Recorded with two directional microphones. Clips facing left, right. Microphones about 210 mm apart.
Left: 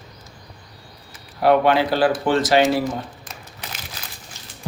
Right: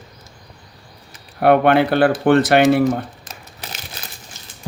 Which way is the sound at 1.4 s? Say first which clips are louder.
Right 3 dB; 60° right (ahead or behind).